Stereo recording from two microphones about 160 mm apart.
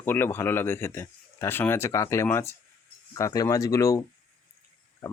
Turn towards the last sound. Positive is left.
turn(degrees=15)  # may be behind; listen again after turning